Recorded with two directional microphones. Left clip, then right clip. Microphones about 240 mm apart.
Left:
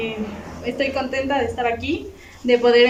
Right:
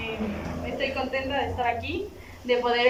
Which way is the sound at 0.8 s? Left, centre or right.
Left.